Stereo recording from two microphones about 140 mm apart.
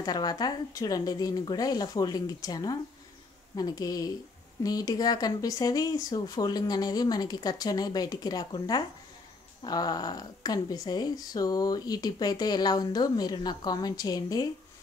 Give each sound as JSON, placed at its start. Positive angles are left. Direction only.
{"t": 0.0, "sound": "speech", "side_deg": 30}